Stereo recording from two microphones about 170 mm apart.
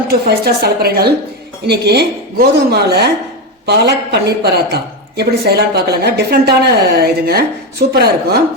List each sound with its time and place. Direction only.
0.1 s a woman's voice: 65° right (ahead or behind)